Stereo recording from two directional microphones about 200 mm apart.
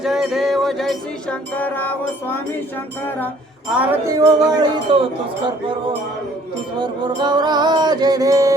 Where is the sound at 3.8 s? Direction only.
15° right (ahead or behind).